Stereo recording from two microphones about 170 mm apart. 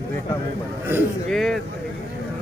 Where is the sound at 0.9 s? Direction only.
10° right (ahead or behind).